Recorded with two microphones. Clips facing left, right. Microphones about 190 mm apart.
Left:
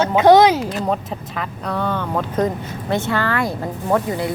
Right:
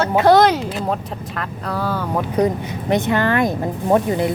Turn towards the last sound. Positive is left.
turn(degrees=-20)  # may be behind; listen again after turning